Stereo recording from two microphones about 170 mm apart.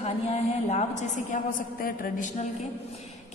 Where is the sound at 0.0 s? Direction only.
40° left (ahead or behind).